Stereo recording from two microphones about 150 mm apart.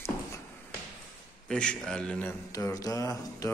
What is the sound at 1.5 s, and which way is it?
Speech, 5° left (ahead or behind).